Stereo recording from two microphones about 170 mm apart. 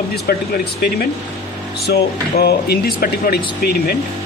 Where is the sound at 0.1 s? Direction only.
65° left (ahead or behind).